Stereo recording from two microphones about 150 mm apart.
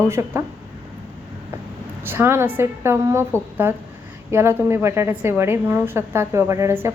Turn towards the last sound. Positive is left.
turn(degrees=-15)  # may be behind; listen again after turning